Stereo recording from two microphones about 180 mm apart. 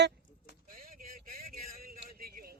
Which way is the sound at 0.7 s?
50° right (ahead or behind).